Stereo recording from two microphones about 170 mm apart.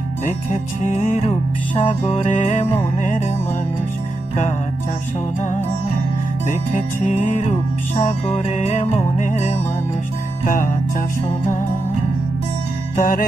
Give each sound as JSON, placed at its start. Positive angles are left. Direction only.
{"t": 0.5, "sound": "music", "side_deg": 40}
{"t": 6.7, "sound": "music", "side_deg": 45}
{"t": 12.9, "sound": "music", "side_deg": 50}